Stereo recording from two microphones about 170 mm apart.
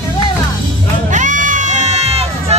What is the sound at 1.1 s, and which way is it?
Crowd, 50° right (ahead or behind).